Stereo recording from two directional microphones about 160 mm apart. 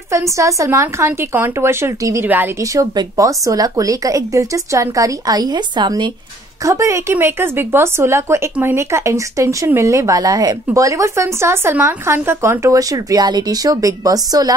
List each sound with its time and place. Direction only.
0.1 s speech: 20° right (ahead or behind)